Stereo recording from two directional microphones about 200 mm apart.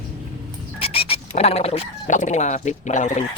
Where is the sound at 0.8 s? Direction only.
30° left (ahead or behind).